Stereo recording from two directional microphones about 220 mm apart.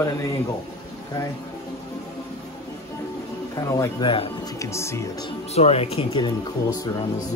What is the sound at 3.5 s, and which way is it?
Speech, 15° left (ahead or behind).